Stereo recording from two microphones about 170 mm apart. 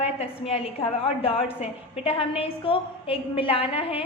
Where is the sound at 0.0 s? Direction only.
35° left (ahead or behind).